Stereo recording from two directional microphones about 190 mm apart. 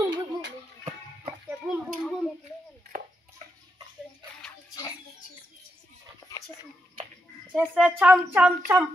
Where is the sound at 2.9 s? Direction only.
40° right (ahead or behind).